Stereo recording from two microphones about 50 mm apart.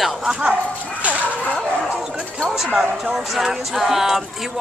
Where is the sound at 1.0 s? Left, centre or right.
Right.